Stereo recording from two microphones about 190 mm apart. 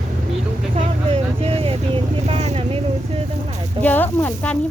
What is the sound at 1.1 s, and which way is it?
Speech, 30° right (ahead or behind).